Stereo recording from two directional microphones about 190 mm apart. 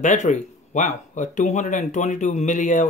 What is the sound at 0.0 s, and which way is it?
Speech, 40° left (ahead or behind).